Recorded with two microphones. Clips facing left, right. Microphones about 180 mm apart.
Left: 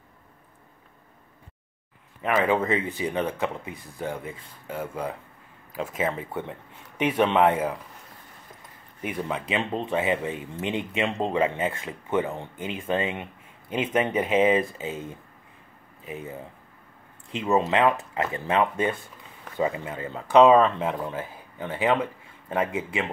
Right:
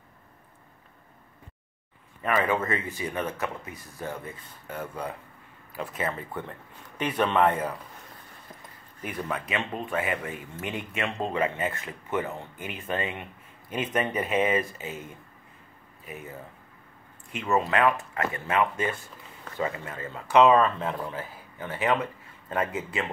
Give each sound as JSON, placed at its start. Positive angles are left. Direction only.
{"t": 2.2, "sound": "speech", "side_deg": 15}
{"t": 6.1, "sound": "speech", "side_deg": 15}
{"t": 7.4, "sound": "speech", "side_deg": 5}
{"t": 9.0, "sound": "speech", "side_deg": 20}
{"t": 14.3, "sound": "speech", "side_deg": 20}
{"t": 19.4, "sound": "speech", "side_deg": 15}